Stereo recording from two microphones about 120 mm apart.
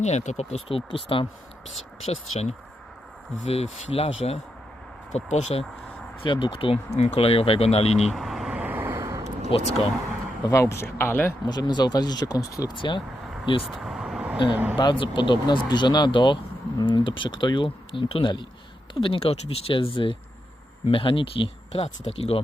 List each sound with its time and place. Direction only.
0.0 s speech: 75° left (ahead or behind); by 1.3 s 45° left (ahead or behind)
2.0 s speech: 65° left (ahead or behind)
5.1 s speech: 70° left (ahead or behind)
6.2 s speech: 45° left (ahead or behind)
7.0 s speech: 60° left (ahead or behind)
8.1 s vehicle: centre (ahead or behind); by 9.2 s 25° right (ahead or behind)
9.5 s speech: 55° left (ahead or behind)
10.5 s speech: 25° left (ahead or behind)
11.4 s speech: 35° left (ahead or behind)
12.7 s speech: 45° left (ahead or behind)
13.7 s vehicle: 5° right (ahead or behind)
14.5 s speech: 10° right (ahead or behind)
14.8 s speech: 40° left (ahead or behind); by 22.4 s 60° left (ahead or behind)